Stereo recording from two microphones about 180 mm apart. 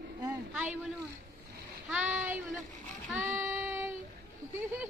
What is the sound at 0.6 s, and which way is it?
Speech, 5° right (ahead or behind).